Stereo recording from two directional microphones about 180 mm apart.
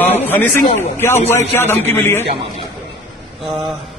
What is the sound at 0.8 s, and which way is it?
A man's voice, 15° left (ahead or behind).